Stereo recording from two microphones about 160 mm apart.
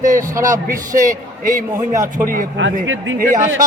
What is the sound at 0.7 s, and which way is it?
A man's voice, 55° right (ahead or behind).